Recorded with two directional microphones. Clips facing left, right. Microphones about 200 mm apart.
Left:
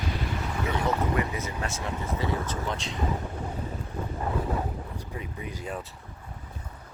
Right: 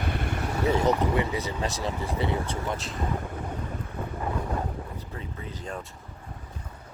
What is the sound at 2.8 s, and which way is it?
Speech, centre (ahead or behind).